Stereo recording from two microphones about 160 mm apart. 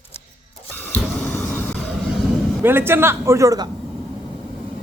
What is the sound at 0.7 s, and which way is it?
Printer, 10° left (ahead or behind).